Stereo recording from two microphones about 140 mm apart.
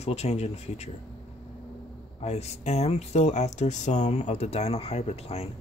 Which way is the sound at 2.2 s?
50° left (ahead or behind).